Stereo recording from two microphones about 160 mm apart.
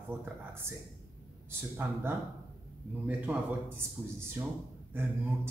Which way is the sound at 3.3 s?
10° right (ahead or behind).